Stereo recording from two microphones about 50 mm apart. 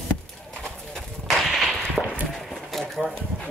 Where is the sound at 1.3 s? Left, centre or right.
Centre.